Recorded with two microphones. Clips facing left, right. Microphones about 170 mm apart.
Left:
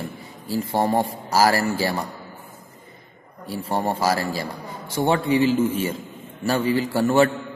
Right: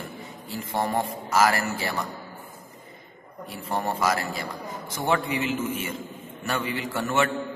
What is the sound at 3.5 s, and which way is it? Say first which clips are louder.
A man's voice: left 4 dB; 30° left (ahead or behind).